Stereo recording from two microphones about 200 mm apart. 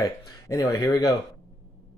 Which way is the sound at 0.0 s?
15° left (ahead or behind).